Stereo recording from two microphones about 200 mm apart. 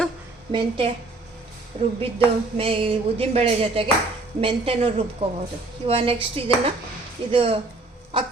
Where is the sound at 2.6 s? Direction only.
25° right (ahead or behind).